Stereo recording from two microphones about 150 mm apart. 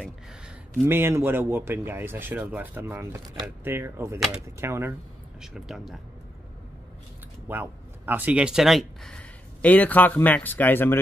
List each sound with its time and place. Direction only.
0.8 s speech: 15° right (ahead or behind)
5.4 s speech: centre (ahead or behind)
7.4 s speech: 15° right (ahead or behind); by 11.0 s 15° left (ahead or behind)